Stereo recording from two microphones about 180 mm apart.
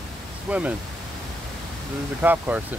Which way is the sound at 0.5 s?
5° right (ahead or behind).